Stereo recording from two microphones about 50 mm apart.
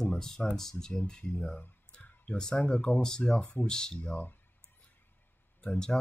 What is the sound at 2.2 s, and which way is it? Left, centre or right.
Speech, centre.